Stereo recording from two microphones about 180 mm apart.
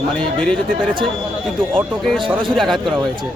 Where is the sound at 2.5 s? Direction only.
Centre (ahead or behind).